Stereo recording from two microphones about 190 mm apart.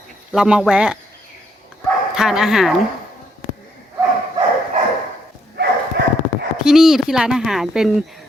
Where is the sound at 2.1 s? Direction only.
Centre (ahead or behind).